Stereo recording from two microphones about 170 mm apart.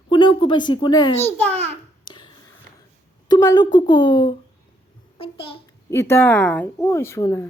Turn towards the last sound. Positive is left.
turn(degrees=15)  # may be behind; listen again after turning